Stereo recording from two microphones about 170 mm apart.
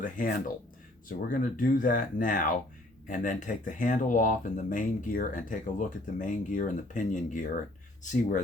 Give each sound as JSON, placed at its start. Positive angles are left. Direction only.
{"t": 0.0, "sound": "speech", "side_deg": 55}